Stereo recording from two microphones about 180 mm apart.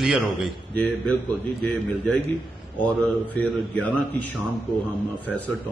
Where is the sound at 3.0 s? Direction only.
5° left (ahead or behind).